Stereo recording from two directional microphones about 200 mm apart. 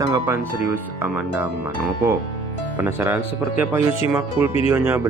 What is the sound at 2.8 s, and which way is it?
Speech, 10° right (ahead or behind).